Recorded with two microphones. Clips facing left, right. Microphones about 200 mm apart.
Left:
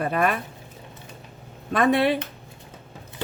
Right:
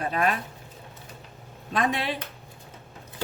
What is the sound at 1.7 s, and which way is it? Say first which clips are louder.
Speech: left 7 dB; 60° left (ahead or behind).